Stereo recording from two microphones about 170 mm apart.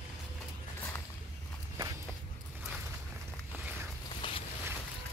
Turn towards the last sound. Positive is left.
turn(degrees=30)  # may be behind; listen again after turning